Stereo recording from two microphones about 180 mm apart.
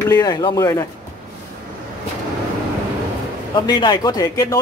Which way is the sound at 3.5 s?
25° left (ahead or behind).